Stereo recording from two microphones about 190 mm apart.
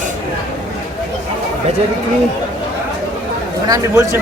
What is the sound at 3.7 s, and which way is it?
Speech, 15° right (ahead or behind).